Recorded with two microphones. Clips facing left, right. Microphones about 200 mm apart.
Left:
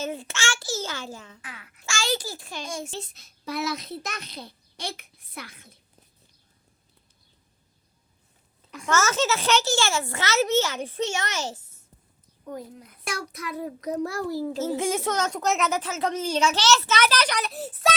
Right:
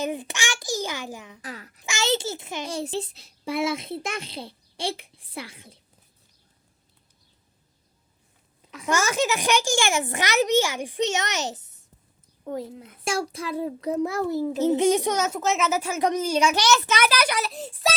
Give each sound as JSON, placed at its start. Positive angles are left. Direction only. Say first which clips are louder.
{"t": 0.0, "sound": "a child's voice", "louder": "right 2 dB", "side_deg": -15}
{"t": 1.4, "sound": "babbling", "louder": "right 7 dB", "side_deg": -40}
{"t": 1.8, "sound": "a child's voice", "louder": "right 3 dB", "side_deg": -20}
{"t": 2.6, "sound": "a child's voice", "louder": "right 6 dB", "side_deg": -35}
{"t": 8.9, "sound": "a child's voice", "louder": "even", "side_deg": -15}